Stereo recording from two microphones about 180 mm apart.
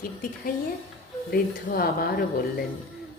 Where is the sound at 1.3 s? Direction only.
55° left (ahead or behind).